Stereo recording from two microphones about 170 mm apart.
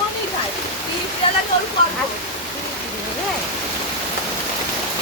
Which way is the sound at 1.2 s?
30° left (ahead or behind).